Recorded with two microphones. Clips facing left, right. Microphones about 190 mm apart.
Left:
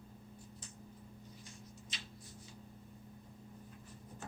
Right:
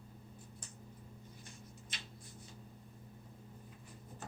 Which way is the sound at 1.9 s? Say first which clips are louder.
Even; 55° right (ahead or behind).